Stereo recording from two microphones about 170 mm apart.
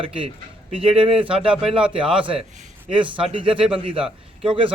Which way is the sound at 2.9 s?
30° right (ahead or behind).